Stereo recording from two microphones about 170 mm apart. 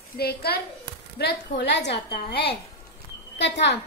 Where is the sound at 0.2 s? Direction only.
65° left (ahead or behind); by 2.1 s 85° left.